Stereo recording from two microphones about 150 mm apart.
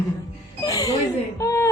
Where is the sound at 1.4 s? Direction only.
20° left (ahead or behind).